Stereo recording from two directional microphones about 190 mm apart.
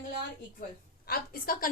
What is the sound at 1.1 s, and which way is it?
Speech, 50° left (ahead or behind).